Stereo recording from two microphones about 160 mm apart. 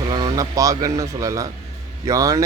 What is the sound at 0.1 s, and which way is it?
A man's voice, 25° right (ahead or behind).